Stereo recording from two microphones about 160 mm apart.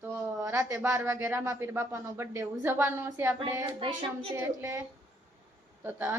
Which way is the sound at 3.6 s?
35° right (ahead or behind).